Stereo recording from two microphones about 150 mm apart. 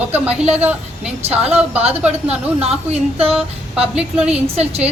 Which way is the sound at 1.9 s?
10° right (ahead or behind).